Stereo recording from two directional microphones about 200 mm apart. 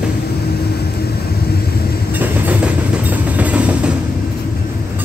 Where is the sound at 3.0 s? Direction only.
10° right (ahead or behind).